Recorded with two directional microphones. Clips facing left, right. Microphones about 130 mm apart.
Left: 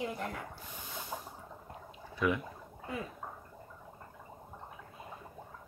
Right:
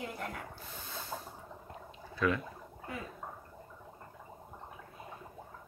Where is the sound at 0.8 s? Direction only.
15° left (ahead or behind).